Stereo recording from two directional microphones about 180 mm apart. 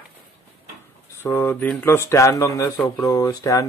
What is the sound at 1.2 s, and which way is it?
Speech, 10° left (ahead or behind).